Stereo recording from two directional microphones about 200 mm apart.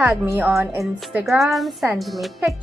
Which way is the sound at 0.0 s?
10° right (ahead or behind).